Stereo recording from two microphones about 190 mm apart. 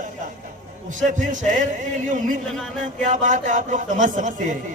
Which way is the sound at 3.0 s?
40° right (ahead or behind).